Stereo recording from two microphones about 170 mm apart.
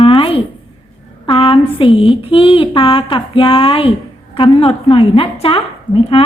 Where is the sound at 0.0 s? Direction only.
30° left (ahead or behind).